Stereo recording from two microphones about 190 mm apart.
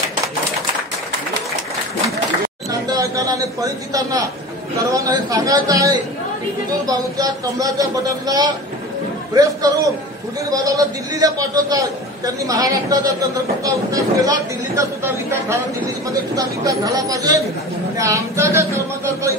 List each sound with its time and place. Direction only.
2.9 s a man's voice: 15° right (ahead or behind)